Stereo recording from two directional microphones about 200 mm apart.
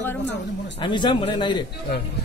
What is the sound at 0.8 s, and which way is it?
Speech, 25° left (ahead or behind).